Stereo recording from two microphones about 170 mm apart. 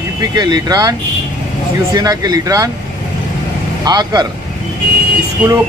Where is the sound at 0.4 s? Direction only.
25° right (ahead or behind).